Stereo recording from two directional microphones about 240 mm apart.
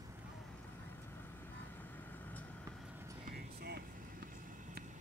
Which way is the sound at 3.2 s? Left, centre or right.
Right.